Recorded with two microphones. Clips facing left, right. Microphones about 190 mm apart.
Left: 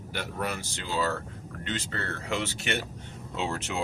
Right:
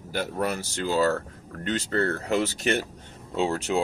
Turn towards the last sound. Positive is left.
turn(degrees=-35)  # may be behind; listen again after turning